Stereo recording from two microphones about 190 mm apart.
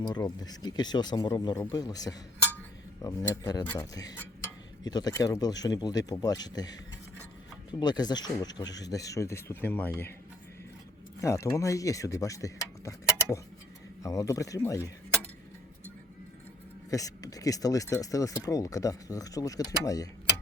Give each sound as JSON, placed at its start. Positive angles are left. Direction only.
{"t": 0.1, "sound": "speech", "side_deg": 20}
{"t": 11.2, "sound": "speech", "side_deg": 15}
{"t": 16.9, "sound": "speech", "side_deg": 20}